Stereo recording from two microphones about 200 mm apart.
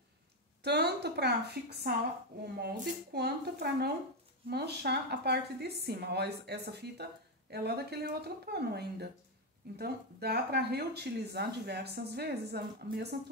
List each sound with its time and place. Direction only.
0.7 s speech: 55° right (ahead or behind)